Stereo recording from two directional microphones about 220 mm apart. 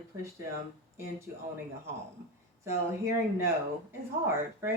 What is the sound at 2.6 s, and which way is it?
Speech, 10° right (ahead or behind).